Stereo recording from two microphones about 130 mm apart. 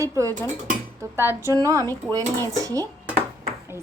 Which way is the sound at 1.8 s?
15° left (ahead or behind).